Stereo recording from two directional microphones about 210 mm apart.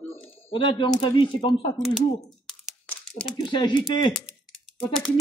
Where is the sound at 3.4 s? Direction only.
20° left (ahead or behind).